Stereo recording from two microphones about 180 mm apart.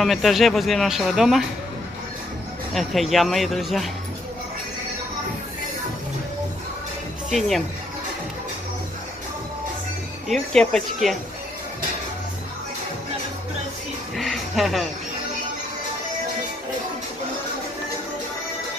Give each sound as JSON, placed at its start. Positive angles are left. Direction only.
{"t": 0.0, "sound": "speech", "side_deg": 0}
{"t": 2.7, "sound": "speech", "side_deg": 0}
{"t": 7.2, "sound": "speech", "side_deg": 0}
{"t": 10.2, "sound": "speech", "side_deg": 0}
{"t": 14.1, "sound": "music", "side_deg": 0}